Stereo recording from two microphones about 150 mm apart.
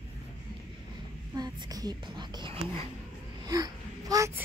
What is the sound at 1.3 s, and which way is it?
Speech, 25° right (ahead or behind).